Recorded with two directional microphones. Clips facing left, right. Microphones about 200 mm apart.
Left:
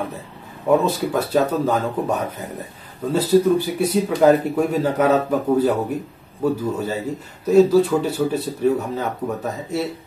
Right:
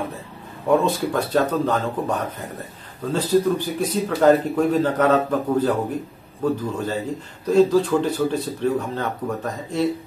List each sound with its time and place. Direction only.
0.7 s speech: 5° left (ahead or behind)